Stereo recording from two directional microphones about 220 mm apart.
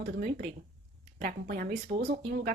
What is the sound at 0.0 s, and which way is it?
Speech, 40° right (ahead or behind).